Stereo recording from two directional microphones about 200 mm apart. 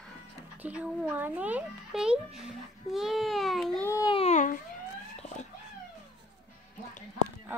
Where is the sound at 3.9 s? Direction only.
20° left (ahead or behind); by 4.5 s 35° left (ahead or behind).